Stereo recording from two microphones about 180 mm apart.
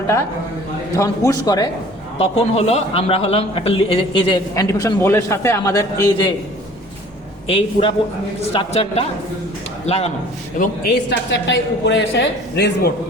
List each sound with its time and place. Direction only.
0.9 s a man's voice: 20° left (ahead or behind)
2.1 s a man's voice: 35° left (ahead or behind)
7.4 s a man's voice: 30° left (ahead or behind)
11.1 s a woman's voice: 75° left (ahead or behind)